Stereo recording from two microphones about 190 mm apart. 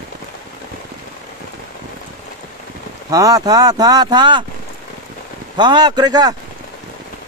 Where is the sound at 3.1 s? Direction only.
20° right (ahead or behind).